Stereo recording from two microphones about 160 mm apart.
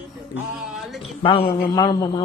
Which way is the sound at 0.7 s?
Centre (ahead or behind).